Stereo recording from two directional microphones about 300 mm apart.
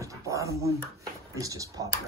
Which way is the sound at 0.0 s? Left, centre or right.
Centre.